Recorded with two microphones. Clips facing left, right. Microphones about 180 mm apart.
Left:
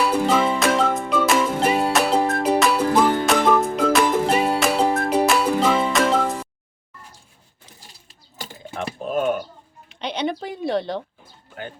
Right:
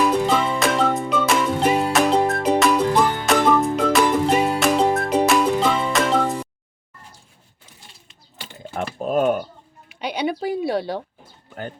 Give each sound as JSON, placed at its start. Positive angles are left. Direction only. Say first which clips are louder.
{"t": 0.0, "sound": "music", "louder": "even", "side_deg": 0}
{"t": 8.7, "sound": "typing", "louder": "right 3 dB", "side_deg": -40}
{"t": 10.0, "sound": "a sound", "louder": "right 2 dB", "side_deg": -5}